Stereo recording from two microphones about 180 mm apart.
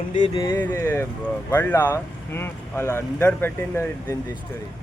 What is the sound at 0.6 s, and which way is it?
Speech, 10° left (ahead or behind).